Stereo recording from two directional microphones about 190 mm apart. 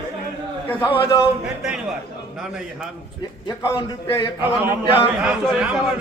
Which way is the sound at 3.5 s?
20° left (ahead or behind).